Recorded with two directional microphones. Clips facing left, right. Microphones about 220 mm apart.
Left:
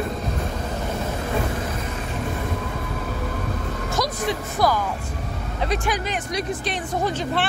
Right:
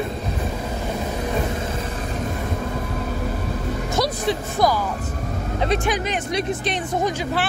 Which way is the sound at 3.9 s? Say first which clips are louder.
Right 2 dB; 30° right (ahead or behind).